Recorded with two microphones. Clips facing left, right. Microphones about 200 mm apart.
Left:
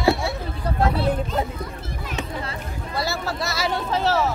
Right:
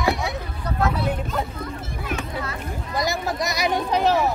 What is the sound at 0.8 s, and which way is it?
Speech, 30° left (ahead or behind).